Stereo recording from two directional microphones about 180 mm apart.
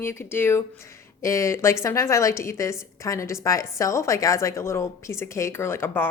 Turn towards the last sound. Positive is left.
turn(degrees=15)  # may be behind; listen again after turning